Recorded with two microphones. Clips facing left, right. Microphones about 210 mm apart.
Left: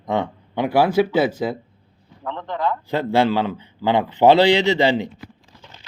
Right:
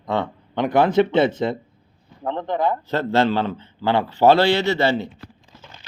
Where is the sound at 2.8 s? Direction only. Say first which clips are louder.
Left 5 dB; 15° left (ahead or behind).